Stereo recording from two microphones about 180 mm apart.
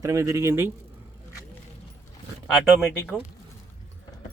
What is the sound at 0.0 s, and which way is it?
Speech, 20° right (ahead or behind).